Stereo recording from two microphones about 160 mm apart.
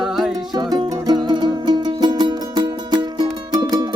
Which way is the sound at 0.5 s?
25° right (ahead or behind).